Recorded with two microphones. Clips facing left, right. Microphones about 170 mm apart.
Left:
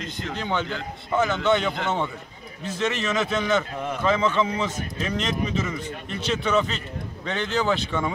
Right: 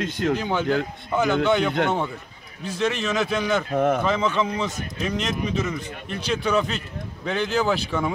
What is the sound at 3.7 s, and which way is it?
Speech, 50° right (ahead or behind).